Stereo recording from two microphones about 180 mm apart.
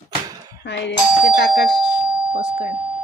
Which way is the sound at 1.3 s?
65° left (ahead or behind).